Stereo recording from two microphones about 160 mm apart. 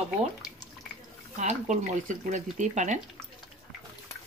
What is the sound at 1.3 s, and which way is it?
Speech, 50° right (ahead or behind).